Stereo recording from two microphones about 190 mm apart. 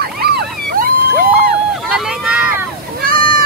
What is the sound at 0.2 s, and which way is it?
Vehicle, 55° right (ahead or behind).